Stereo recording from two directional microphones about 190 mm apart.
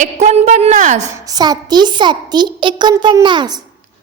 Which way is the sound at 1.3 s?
20° right (ahead or behind).